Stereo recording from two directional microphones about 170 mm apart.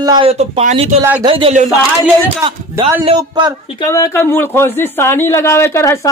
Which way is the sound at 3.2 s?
25° right (ahead or behind).